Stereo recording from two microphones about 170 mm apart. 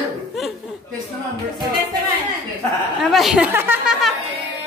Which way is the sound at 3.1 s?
Centre (ahead or behind).